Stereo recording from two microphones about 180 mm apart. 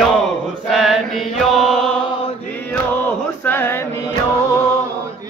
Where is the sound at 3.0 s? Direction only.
10° left (ahead or behind).